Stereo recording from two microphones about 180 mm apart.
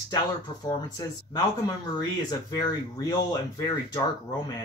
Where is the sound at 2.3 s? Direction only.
20° left (ahead or behind).